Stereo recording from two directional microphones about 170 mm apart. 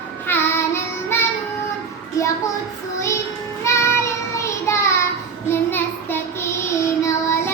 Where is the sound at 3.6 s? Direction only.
15° left (ahead or behind).